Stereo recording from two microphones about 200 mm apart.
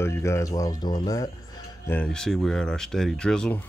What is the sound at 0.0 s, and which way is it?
Speech, 15° left (ahead or behind).